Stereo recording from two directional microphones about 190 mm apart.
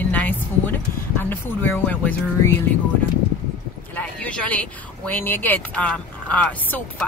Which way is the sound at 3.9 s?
5° left (ahead or behind).